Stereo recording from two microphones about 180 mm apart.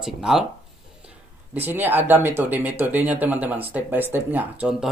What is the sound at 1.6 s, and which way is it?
Speech, 10° right (ahead or behind).